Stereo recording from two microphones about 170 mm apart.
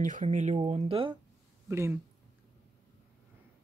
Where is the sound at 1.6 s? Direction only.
15° right (ahead or behind).